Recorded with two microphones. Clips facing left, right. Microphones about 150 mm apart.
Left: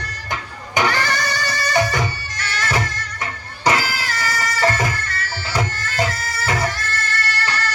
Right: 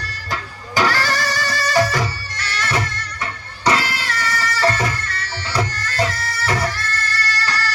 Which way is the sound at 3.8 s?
30° left (ahead or behind).